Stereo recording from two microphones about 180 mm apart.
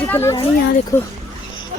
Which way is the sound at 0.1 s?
15° left (ahead or behind).